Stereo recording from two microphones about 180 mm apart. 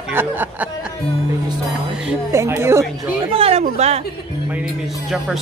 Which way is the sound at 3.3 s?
35° right (ahead or behind).